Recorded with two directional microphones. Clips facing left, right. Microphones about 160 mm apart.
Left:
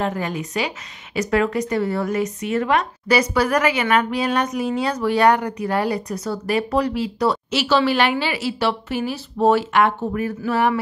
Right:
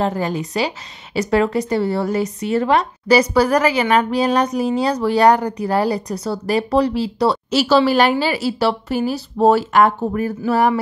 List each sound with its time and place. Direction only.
0.0 s a woman's voice: 35° right (ahead or behind)